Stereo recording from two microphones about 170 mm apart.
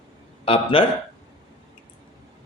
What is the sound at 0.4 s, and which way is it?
Speech, 30° left (ahead or behind).